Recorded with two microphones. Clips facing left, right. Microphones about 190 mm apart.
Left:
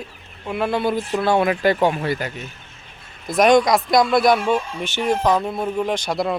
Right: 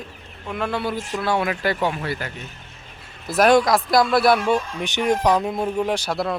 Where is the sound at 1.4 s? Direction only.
25° left (ahead or behind).